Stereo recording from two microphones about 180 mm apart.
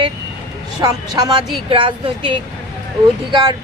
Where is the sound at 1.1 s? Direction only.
25° right (ahead or behind).